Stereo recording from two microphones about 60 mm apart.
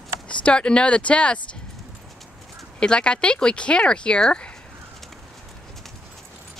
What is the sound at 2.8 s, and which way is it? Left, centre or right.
Speech, centre.